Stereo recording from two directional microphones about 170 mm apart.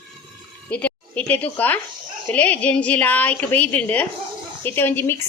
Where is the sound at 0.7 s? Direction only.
10° left (ahead or behind).